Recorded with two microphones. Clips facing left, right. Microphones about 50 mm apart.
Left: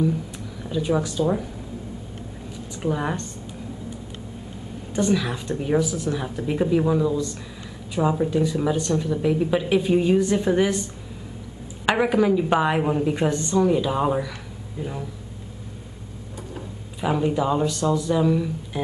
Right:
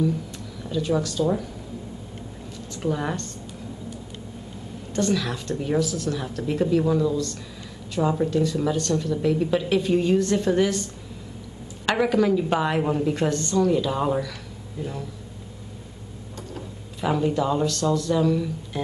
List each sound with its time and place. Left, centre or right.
0.7 s a woman's voice: centre
2.7 s a woman's voice: centre
4.9 s a woman's voice: centre
16.5 s speech: centre